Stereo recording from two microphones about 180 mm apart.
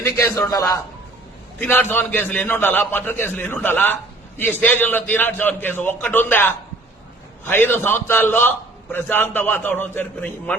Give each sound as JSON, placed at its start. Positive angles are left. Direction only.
{"t": 0.0, "sound": "a man's voice", "side_deg": 15}